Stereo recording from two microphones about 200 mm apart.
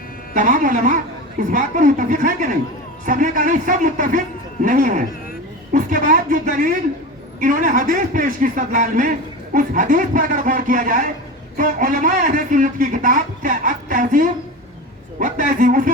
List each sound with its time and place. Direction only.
0.3 s speech: 40° right (ahead or behind)